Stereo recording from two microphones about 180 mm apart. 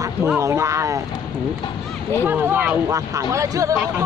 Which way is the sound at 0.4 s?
15° right (ahead or behind).